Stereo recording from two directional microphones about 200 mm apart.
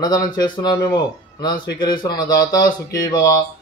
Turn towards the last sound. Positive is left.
turn(degrees=20)  # may be behind; listen again after turning